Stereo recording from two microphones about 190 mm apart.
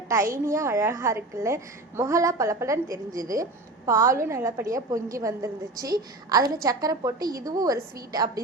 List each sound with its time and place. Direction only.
0.1 s a woman's voice: 15° right (ahead or behind)